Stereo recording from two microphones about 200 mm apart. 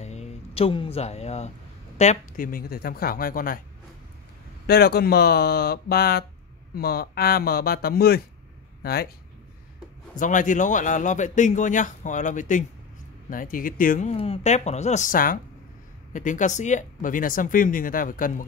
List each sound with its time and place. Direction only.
0.0 s music: 35° left (ahead or behind)
2.0 s speech: 40° left (ahead or behind)
4.6 s speech: 50° left (ahead or behind)
10.1 s speech: 40° left (ahead or behind)